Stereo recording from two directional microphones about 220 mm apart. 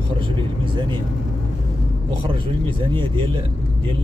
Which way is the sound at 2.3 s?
20° right (ahead or behind).